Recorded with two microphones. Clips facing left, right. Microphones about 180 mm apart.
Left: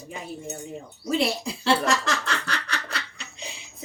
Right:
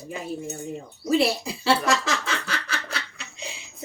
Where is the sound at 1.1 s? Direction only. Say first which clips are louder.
Right 3 dB; 5° right (ahead or behind).